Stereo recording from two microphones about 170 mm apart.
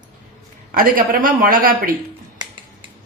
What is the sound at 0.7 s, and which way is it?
Speech, 55° right (ahead or behind).